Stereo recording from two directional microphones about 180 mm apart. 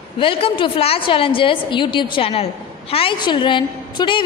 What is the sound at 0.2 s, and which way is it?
A woman's voice, 30° left (ahead or behind).